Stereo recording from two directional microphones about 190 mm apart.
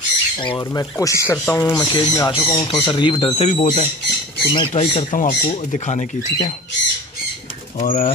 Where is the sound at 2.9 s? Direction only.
25° left (ahead or behind).